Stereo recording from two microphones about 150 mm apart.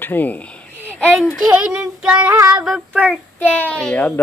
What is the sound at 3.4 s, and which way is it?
Speech, 10° left (ahead or behind).